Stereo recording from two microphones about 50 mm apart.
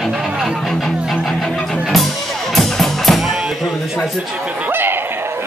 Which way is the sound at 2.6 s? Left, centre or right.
Centre.